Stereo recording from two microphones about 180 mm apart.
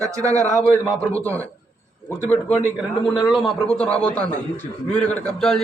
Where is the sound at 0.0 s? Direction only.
15° right (ahead or behind).